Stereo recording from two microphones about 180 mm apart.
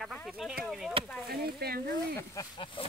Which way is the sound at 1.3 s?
60° right (ahead or behind).